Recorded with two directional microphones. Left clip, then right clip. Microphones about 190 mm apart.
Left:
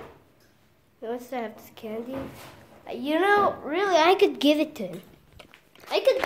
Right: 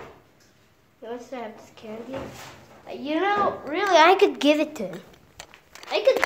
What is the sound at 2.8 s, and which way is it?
Speech, 45° left (ahead or behind).